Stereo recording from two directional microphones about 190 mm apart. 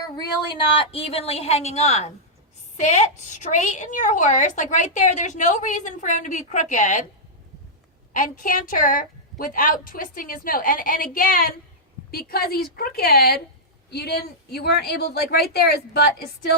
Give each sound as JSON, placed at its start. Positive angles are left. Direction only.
{"t": 0.2, "sound": "a woman's voice", "side_deg": 25}
{"t": 8.1, "sound": "a woman's voice", "side_deg": 45}